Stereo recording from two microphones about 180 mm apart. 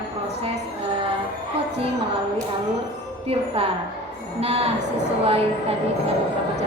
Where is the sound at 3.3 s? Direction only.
30° right (ahead or behind).